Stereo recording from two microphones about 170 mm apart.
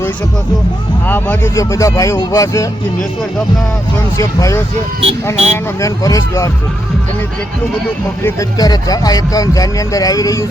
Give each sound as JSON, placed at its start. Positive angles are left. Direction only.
{"t": 1.0, "sound": "speech", "side_deg": 10}
{"t": 4.2, "sound": "speech", "side_deg": 15}
{"t": 4.9, "sound": "speech", "side_deg": -35}
{"t": 5.8, "sound": "speech", "side_deg": 20}
{"t": 8.2, "sound": "speech", "side_deg": 20}